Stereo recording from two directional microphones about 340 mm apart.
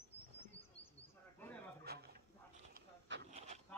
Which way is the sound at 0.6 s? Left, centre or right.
Centre.